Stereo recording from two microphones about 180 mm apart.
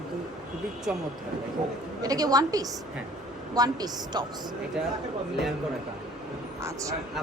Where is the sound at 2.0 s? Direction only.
20° right (ahead or behind).